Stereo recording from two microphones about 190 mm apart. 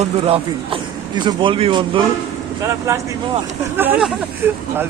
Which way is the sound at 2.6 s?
15° right (ahead or behind).